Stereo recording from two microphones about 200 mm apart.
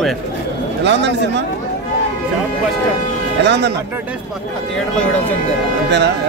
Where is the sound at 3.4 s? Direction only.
60° right (ahead or behind).